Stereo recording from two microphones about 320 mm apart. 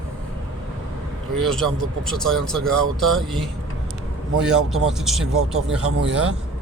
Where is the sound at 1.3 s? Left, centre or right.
Centre.